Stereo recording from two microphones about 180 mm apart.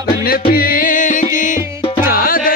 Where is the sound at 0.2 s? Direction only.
55° left (ahead or behind).